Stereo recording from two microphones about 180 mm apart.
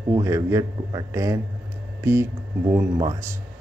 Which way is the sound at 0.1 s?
15° right (ahead or behind).